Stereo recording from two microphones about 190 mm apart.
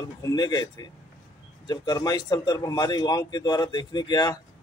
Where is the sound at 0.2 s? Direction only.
20° left (ahead or behind).